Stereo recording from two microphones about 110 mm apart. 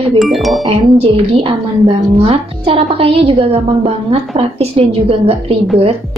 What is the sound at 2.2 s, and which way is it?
A woman's voice, 60° right (ahead or behind).